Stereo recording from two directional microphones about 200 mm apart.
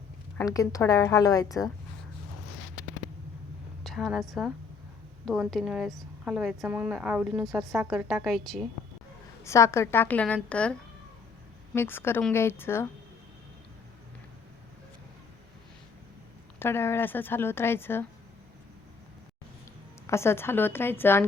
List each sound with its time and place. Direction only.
0.3 s a woman's voice: 15° left (ahead or behind)
3.8 s a woman's voice: centre (ahead or behind)
9.4 s a woman's voice: 15° left (ahead or behind)
16.6 s a woman's voice: 10° left (ahead or behind)
20.1 s a woman's voice: 15° left (ahead or behind)